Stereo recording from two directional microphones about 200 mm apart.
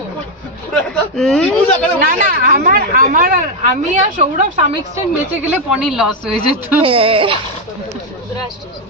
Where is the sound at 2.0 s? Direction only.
45° right (ahead or behind).